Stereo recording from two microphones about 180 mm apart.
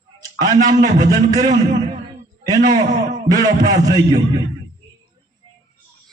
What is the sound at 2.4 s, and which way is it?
A man's voice, 20° right (ahead or behind).